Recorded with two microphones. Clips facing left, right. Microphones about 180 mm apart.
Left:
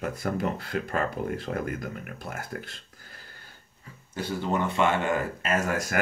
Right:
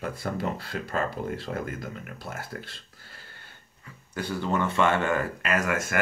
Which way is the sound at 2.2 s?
45° left (ahead or behind).